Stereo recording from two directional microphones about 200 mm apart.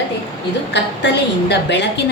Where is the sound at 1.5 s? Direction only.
60° left (ahead or behind).